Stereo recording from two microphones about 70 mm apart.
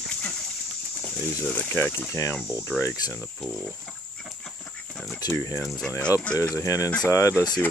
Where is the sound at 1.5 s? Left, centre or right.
Left.